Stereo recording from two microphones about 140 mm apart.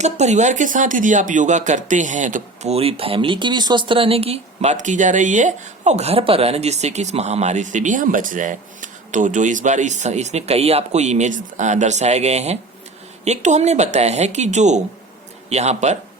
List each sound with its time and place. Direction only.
0.0 s speech: 55° right (ahead or behind)